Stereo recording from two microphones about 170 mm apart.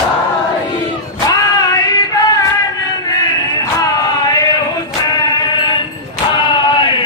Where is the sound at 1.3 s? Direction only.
20° left (ahead or behind).